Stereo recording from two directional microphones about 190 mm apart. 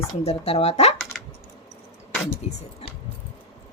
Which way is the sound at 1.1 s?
Centre (ahead or behind).